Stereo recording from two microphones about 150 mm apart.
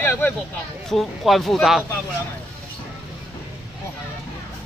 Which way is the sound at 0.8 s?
Centre (ahead or behind).